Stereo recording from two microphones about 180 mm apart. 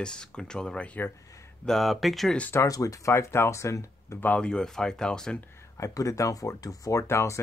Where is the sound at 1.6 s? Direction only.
Centre (ahead or behind).